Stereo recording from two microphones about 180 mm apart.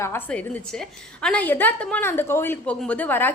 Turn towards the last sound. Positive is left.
turn(degrees=10)  # may be behind; listen again after turning